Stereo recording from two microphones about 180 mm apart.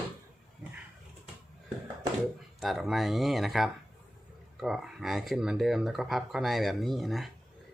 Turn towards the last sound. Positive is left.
turn(degrees=0)  # may be behind; listen again after turning